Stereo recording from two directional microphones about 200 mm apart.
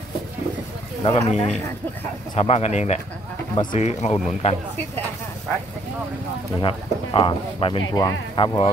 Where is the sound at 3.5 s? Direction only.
20° left (ahead or behind).